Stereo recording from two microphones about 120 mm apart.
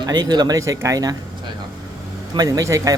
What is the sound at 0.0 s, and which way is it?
Speech, 35° right (ahead or behind).